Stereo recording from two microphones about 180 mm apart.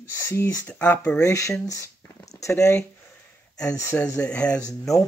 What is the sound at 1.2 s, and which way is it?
Speech, 15° left (ahead or behind).